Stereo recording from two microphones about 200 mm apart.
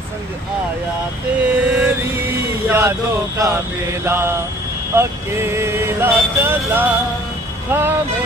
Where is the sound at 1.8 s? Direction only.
10° right (ahead or behind).